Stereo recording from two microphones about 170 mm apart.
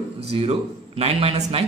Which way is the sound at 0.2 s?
35° right (ahead or behind).